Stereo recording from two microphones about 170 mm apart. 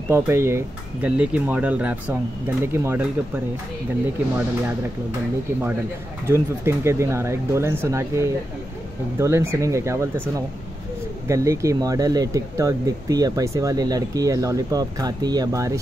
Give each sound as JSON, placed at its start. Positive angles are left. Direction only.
{"t": 0.1, "sound": "speech", "side_deg": -15}
{"t": 6.2, "sound": "speech", "side_deg": -15}